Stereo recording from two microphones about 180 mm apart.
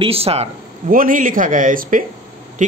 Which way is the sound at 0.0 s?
35° right (ahead or behind).